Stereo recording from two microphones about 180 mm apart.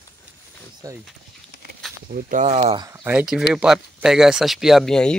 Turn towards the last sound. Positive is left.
turn(degrees=5)  # may be behind; listen again after turning